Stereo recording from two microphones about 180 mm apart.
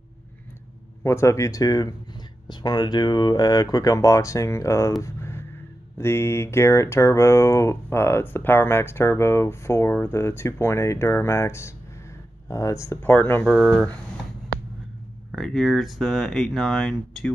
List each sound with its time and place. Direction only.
1.0 s speech: 15° left (ahead or behind)
5.0 s a sound: 15° left (ahead or behind)
5.9 s speech: 15° left (ahead or behind)
15.3 s speech: centre (ahead or behind)